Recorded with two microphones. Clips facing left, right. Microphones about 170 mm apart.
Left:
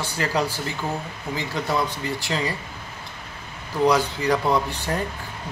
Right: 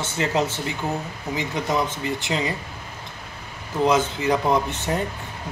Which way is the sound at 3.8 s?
20° right (ahead or behind).